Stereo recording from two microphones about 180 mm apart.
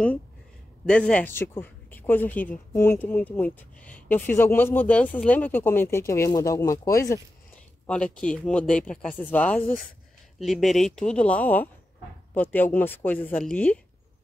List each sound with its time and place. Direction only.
0.8 s speech: 5° left (ahead or behind)
7.8 s speech: 5° left (ahead or behind)